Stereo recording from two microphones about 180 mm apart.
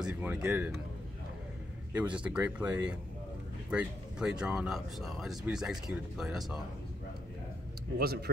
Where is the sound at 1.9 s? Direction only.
5° right (ahead or behind).